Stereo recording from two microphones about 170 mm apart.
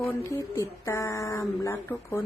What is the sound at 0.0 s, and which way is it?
Speech, 15° left (ahead or behind).